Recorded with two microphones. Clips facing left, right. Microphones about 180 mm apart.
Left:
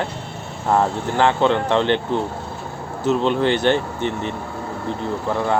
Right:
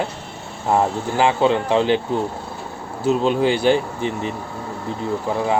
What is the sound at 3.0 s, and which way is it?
Speech, 10° right (ahead or behind).